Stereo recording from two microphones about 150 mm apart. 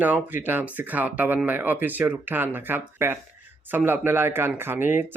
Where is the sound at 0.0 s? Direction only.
10° right (ahead or behind).